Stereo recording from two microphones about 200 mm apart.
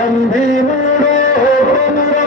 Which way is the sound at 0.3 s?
40° left (ahead or behind).